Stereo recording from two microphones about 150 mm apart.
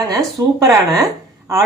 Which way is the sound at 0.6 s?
Centre (ahead or behind).